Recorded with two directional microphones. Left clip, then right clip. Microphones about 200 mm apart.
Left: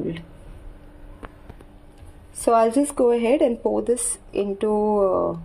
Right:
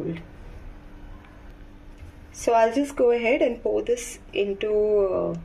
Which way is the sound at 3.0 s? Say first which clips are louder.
Left 1 dB; 35° left (ahead or behind).